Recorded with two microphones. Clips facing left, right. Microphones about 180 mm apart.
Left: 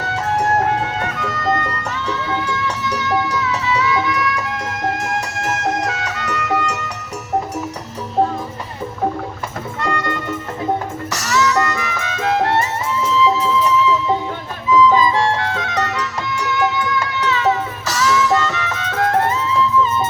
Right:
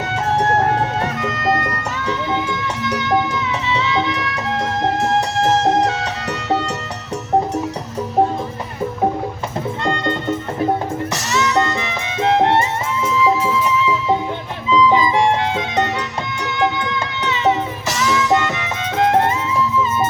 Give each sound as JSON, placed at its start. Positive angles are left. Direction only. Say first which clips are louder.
{"t": 2.0, "sound": "music", "louder": "right 2 dB", "side_deg": -15}
{"t": 9.8, "sound": "music", "louder": "right 1 dB", "side_deg": -25}